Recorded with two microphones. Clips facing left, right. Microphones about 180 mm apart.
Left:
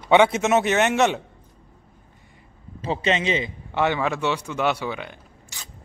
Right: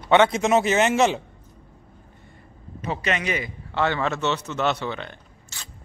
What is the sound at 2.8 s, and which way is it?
A man's voice, 30° left (ahead or behind).